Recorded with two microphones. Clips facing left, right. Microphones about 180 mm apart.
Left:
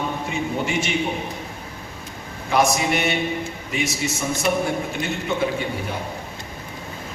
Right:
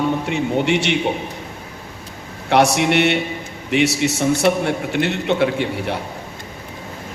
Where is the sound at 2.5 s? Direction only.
70° right (ahead or behind).